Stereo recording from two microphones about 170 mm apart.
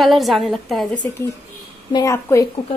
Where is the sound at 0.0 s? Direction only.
Centre (ahead or behind).